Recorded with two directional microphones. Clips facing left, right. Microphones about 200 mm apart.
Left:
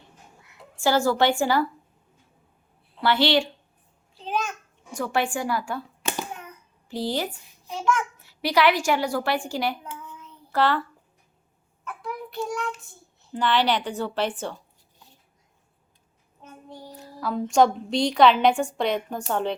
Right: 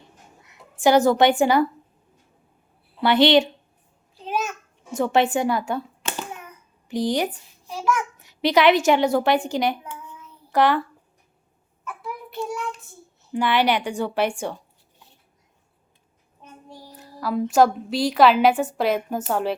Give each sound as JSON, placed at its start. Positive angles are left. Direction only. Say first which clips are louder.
{"t": 0.8, "sound": "a woman's voice", "louder": "right 5 dB", "side_deg": -20}
{"t": 3.0, "sound": "a woman's voice", "louder": "right 5 dB", "side_deg": -20}
{"t": 4.9, "sound": "a woman's voice", "louder": "right 6 dB", "side_deg": -20}
{"t": 6.8, "sound": "a woman's voice", "louder": "right 5 dB", "side_deg": -15}
{"t": 12.0, "sound": "child singing", "louder": "even", "side_deg": -5}
{"t": 13.3, "sound": "a woman's voice", "louder": "right 2 dB", "side_deg": -10}
{"t": 16.4, "sound": "child singing", "louder": "left 1 dB", "side_deg": -10}
{"t": 17.0, "sound": "a woman's voice", "louder": "right 3 dB", "side_deg": -5}